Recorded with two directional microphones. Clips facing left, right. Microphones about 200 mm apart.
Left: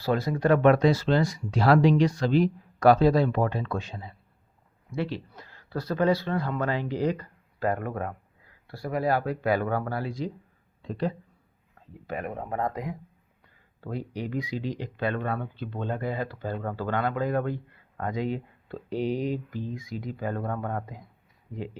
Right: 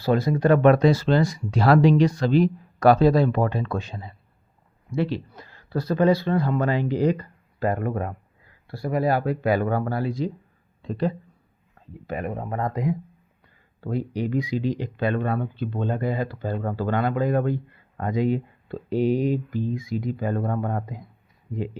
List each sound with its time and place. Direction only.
0.0 s speech: 20° right (ahead or behind); by 4.1 s 40° right (ahead or behind)
4.9 s speech: 20° right (ahead or behind)
9.6 s speech: 30° right (ahead or behind)
12.0 s speech: 10° right (ahead or behind)
12.4 s speech: 10° left (ahead or behind)
13.9 s speech: 15° right (ahead or behind)
16.7 s speech: 15° right (ahead or behind)